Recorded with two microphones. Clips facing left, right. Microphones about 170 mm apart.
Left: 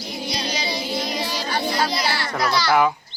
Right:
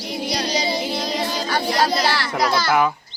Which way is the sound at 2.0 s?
70° right (ahead or behind).